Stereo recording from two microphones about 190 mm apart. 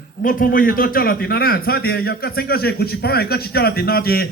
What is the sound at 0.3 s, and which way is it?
A man's voice, 45° left (ahead or behind).